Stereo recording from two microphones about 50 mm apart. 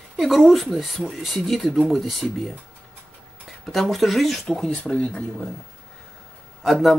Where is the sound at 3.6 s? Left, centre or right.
Centre.